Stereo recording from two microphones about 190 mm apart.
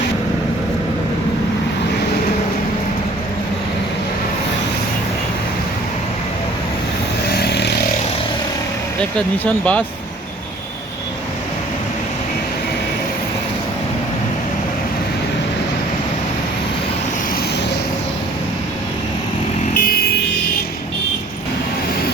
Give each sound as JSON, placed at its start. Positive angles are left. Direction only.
{"t": 7.3, "sound": "vehicle", "side_deg": 60}
{"t": 9.0, "sound": "speech", "side_deg": 5}